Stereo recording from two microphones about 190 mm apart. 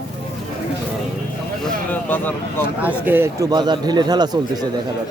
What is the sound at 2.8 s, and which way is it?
Speech, 10° right (ahead or behind).